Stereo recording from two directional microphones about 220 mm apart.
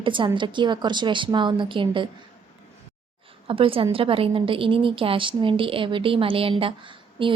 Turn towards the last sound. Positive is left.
turn(degrees=-25)  # may be behind; listen again after turning